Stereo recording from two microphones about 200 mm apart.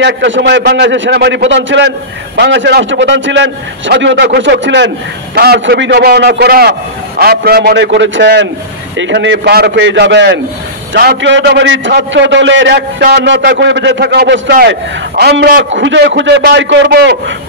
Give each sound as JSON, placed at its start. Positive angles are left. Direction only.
{"t": 0.0, "sound": "a man's voice", "side_deg": -60}